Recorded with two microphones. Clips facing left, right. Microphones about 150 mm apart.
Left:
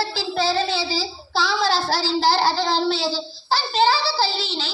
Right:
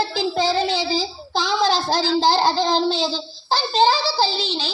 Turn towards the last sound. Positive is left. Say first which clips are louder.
# right 2 dB
turn(degrees=-15)  # may be behind; listen again after turning